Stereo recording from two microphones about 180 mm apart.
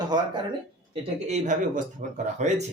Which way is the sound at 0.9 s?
35° right (ahead or behind).